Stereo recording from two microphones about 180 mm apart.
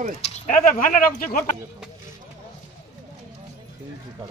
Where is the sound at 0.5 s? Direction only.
50° left (ahead or behind).